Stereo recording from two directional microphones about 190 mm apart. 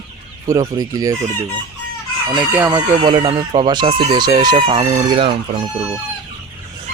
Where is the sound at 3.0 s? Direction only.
25° right (ahead or behind).